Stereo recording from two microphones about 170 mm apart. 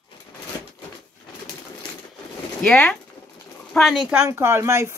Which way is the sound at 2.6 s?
10° left (ahead or behind).